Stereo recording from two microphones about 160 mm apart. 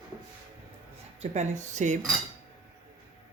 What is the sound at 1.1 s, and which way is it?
Speech, 45° right (ahead or behind).